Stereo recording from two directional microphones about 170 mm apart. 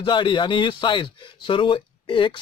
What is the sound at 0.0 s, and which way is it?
Speech, 25° left (ahead or behind).